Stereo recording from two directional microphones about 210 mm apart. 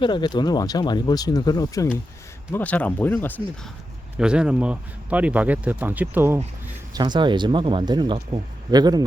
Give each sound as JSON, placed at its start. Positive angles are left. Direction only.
{"t": 0.0, "sound": "speech", "side_deg": 20}
{"t": 4.2, "sound": "speech", "side_deg": -5}
{"t": 6.9, "sound": "speech", "side_deg": -20}